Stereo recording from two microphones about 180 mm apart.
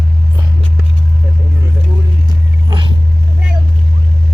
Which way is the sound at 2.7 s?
25° right (ahead or behind).